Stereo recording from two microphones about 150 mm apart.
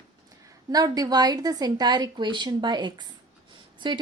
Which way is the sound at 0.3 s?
25° right (ahead or behind).